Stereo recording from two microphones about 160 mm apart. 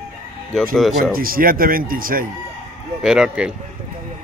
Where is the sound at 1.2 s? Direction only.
65° right (ahead or behind).